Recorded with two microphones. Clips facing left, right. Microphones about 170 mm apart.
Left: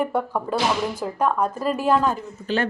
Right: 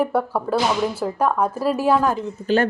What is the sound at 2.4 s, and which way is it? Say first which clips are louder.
Speech: right 5 dB; 40° right (ahead or behind).